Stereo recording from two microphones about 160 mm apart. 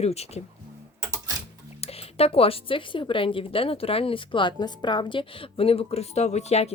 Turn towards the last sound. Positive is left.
turn(degrees=40)  # may be behind; listen again after turning